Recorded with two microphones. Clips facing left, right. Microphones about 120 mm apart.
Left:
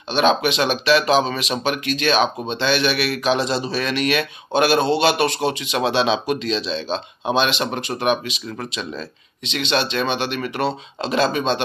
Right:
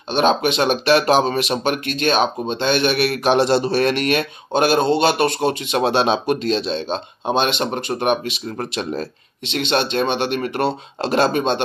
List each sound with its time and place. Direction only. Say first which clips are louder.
0.1 s speech: right 1 dB; 45° right (ahead or behind)
11.0 s speech: right 2 dB; 60° right (ahead or behind)